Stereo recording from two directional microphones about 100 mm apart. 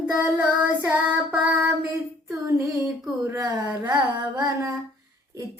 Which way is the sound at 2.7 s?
35° right (ahead or behind).